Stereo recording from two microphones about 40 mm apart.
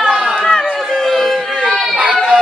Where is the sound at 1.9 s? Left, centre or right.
Right.